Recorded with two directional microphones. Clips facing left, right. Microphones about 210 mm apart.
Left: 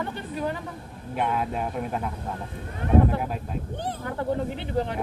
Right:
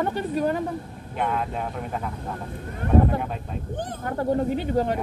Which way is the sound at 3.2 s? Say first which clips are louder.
Even; 5° left (ahead or behind).